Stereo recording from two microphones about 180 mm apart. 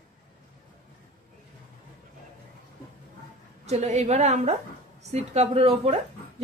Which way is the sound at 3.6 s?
40° right (ahead or behind).